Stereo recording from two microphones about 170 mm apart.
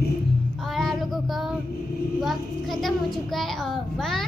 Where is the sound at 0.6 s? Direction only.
Centre (ahead or behind).